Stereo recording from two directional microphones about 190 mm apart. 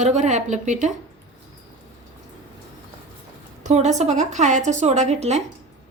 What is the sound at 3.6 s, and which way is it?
A woman's voice, 35° right (ahead or behind).